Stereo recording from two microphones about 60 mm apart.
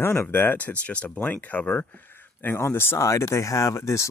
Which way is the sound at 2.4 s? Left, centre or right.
Left.